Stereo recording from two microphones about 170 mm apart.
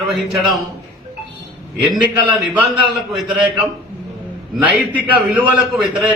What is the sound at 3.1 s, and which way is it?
Speech, centre (ahead or behind).